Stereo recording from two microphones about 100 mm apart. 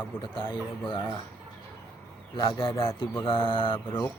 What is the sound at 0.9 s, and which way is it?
Speech, 55° left (ahead or behind).